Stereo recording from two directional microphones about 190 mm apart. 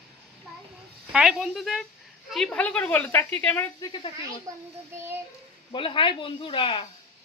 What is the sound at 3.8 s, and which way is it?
Speech, 25° left (ahead or behind).